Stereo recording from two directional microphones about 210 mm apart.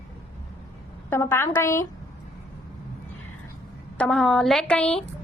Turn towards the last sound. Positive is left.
turn(degrees=5)  # may be behind; listen again after turning